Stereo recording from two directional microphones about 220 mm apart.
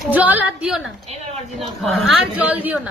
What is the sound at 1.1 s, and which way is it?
Speech, 30° right (ahead or behind).